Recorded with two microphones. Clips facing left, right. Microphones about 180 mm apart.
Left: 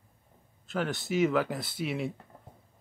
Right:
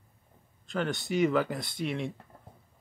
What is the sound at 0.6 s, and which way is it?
Speech, 5° left (ahead or behind).